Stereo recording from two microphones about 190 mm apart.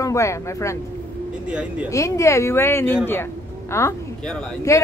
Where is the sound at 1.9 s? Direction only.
15° left (ahead or behind).